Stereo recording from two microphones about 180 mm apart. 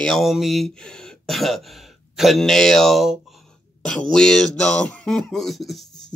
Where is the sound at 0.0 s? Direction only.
Centre (ahead or behind).